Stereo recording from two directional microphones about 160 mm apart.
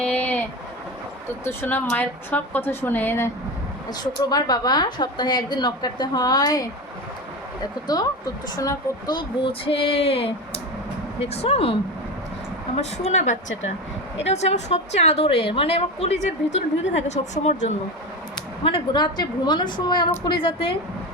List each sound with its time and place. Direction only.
0.0 s a sound: 10° left (ahead or behind)
1.5 s a woman's voice: 10° left (ahead or behind)
4.0 s a woman's voice: 25° left (ahead or behind)
8.5 s a woman's voice: 25° left (ahead or behind); by 17.7 s 45° left (ahead or behind)
18.6 s a woman's voice: 30° left (ahead or behind)